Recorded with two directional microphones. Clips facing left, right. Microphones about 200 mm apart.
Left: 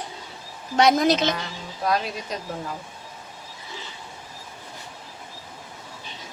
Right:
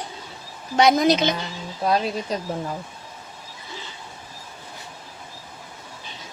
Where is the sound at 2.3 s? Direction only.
35° right (ahead or behind).